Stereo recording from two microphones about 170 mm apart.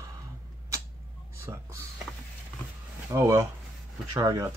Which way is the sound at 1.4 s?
15° right (ahead or behind).